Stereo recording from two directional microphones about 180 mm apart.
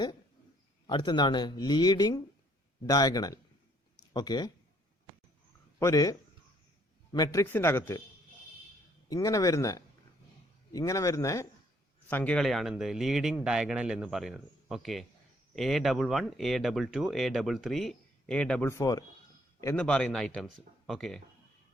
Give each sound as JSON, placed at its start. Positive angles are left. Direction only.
{"t": 0.9, "sound": "speech", "side_deg": 25}
{"t": 5.8, "sound": "speech", "side_deg": 20}
{"t": 9.0, "sound": "speech", "side_deg": 20}
{"t": 18.7, "sound": "speech", "side_deg": 20}
{"t": 19.6, "sound": "speech", "side_deg": 5}